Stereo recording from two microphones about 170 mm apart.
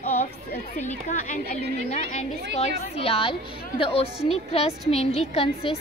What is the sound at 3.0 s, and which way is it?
A woman's voice, 35° left (ahead or behind).